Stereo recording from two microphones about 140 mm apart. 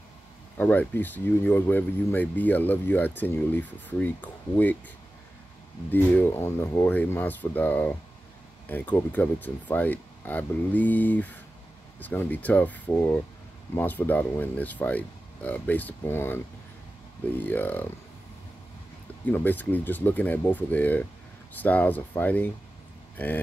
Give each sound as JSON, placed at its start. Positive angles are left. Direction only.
{"t": 0.6, "sound": "speech", "side_deg": 15}
{"t": 5.9, "sound": "speech", "side_deg": 15}
{"t": 17.4, "sound": "speech", "side_deg": 15}
{"t": 19.3, "sound": "speech", "side_deg": 10}